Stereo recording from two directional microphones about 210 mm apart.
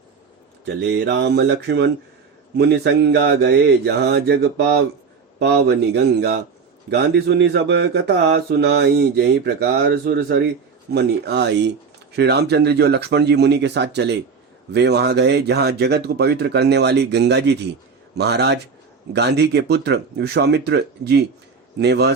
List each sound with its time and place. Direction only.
0.6 s speech: 55° right (ahead or behind)
2.6 s mantra: 50° right (ahead or behind)